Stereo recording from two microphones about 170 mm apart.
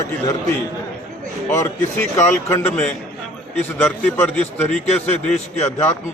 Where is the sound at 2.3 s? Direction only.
15° left (ahead or behind).